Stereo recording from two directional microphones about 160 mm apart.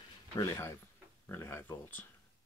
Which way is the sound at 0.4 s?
15° left (ahead or behind).